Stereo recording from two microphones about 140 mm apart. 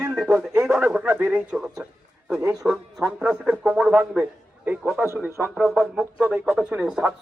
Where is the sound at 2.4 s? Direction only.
25° right (ahead or behind).